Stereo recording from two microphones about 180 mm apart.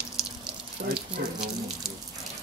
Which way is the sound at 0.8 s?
55° right (ahead or behind).